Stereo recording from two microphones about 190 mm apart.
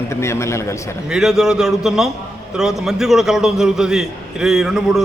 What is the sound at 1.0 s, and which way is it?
A man's voice, 5° right (ahead or behind).